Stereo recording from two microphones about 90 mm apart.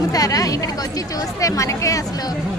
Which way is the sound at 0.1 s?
40° left (ahead or behind).